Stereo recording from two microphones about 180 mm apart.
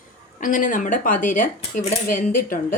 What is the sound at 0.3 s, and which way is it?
Speech, 45° left (ahead or behind).